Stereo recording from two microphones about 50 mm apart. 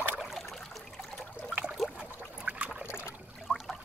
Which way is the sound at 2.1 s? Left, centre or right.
Right.